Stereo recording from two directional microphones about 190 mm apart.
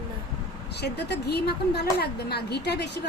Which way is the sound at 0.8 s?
60° left (ahead or behind).